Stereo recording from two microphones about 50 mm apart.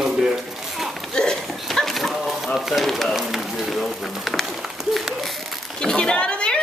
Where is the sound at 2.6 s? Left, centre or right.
Centre.